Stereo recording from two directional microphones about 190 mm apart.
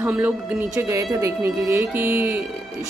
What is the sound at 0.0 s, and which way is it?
Speech, 10° right (ahead or behind).